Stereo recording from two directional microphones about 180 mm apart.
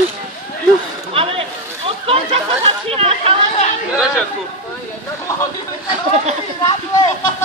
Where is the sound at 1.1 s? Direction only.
30° right (ahead or behind).